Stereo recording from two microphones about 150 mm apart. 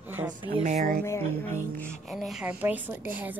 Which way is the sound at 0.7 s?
50° right (ahead or behind).